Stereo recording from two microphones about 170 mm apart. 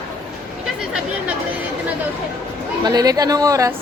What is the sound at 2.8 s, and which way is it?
Speech, 20° right (ahead or behind).